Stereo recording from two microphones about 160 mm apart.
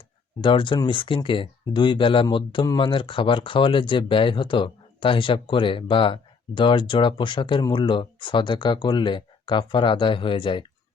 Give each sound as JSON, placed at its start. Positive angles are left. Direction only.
{"t": 0.4, "sound": "speech", "side_deg": 30}